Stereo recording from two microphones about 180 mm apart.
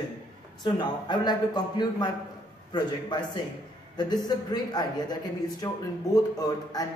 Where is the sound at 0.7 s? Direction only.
25° left (ahead or behind).